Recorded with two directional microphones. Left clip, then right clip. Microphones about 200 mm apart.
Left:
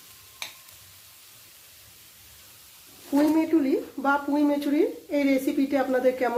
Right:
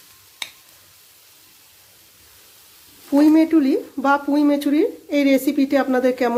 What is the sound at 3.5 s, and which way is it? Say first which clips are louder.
A woman's voice: right 6 dB; 55° right (ahead or behind).